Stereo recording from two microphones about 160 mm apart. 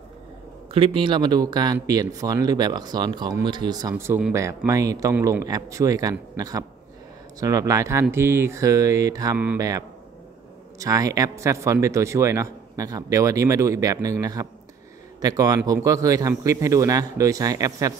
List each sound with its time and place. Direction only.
0.7 s speech: 35° right (ahead or behind)